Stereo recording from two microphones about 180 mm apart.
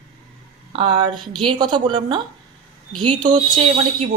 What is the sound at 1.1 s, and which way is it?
Speech, centre (ahead or behind).